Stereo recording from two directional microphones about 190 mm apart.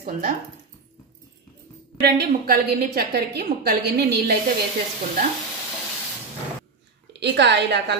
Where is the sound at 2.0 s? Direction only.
55° right (ahead or behind).